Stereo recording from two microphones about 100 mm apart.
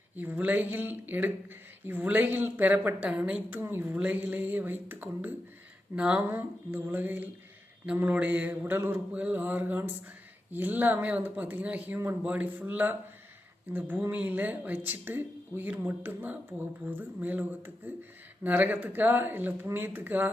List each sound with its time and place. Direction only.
0.2 s speech: 15° right (ahead or behind)